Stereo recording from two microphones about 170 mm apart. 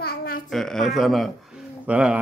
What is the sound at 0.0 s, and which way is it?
Babbling, 60° left (ahead or behind).